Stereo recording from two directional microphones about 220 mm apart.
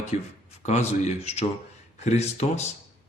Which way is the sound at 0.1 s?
30° left (ahead or behind).